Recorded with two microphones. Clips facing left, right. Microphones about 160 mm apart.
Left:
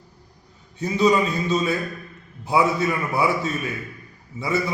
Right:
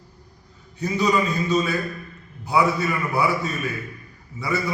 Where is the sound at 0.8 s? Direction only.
25° left (ahead or behind).